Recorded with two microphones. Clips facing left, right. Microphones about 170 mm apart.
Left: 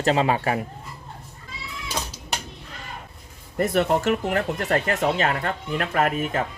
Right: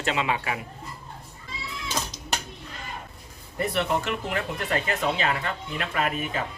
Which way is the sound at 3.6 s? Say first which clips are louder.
Left 5 dB; 45° left (ahead or behind).